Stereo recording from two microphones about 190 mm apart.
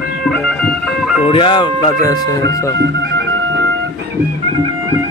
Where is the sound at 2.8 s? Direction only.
70° right (ahead or behind).